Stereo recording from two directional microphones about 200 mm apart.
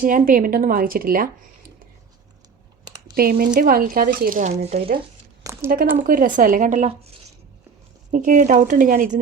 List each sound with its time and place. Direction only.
0.0 s speech: 40° right (ahead or behind)
2.8 s typing: 20° right (ahead or behind)
3.2 s speech: 45° right (ahead or behind)
5.4 s a sound: 15° right (ahead or behind)
6.0 s speech: 45° right (ahead or behind)